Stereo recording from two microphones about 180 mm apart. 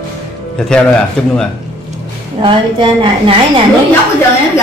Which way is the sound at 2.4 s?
25° right (ahead or behind).